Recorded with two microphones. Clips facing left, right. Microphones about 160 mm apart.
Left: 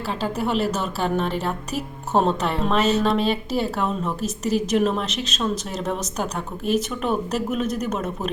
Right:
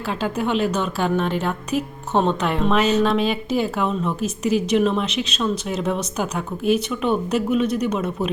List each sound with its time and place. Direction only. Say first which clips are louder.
0.1 s a woman's voice: right 2 dB; centre (ahead or behind)
1.7 s speech: right 5 dB; 35° left (ahead or behind)
2.1 s a woman's voice: right 1 dB; 5° left (ahead or behind)